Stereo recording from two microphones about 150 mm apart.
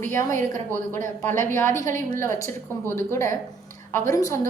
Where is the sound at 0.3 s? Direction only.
60° right (ahead or behind).